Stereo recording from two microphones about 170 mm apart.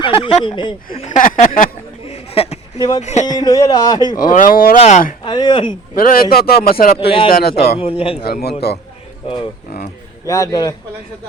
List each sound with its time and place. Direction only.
0.0 s speech: 30° left (ahead or behind)
0.9 s speech: 45° left (ahead or behind)
2.0 s a sound: 35° left (ahead or behind)
2.7 s speech: 25° left (ahead or behind)
3.0 s speech: 40° left (ahead or behind)
3.3 s speech: 20° left (ahead or behind)
4.2 s speech: 55° left (ahead or behind)
4.8 s speech: 45° left (ahead or behind)
5.2 s speech: 25° left (ahead or behind)
5.9 s a man's voice: 55° left (ahead or behind)
7.0 s a man's voice: 30° left (ahead or behind)
8.6 s a man's voice: 70° left (ahead or behind)
9.2 s speech: 30° left (ahead or behind)